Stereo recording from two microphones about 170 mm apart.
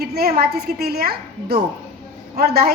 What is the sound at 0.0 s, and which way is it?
A woman's voice, 65° right (ahead or behind).